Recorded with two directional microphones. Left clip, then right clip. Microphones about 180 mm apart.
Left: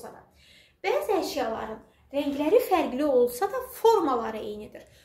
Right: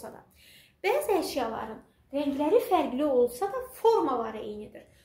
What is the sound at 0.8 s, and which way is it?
Speech, 45° right (ahead or behind).